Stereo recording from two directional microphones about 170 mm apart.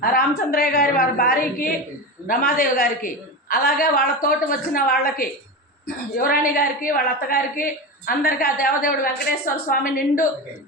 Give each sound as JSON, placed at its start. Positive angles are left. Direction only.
{"t": 0.0, "sound": "a woman's voice", "side_deg": 60}